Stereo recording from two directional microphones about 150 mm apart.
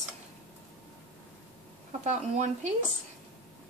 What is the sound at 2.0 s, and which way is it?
Speech, 50° right (ahead or behind).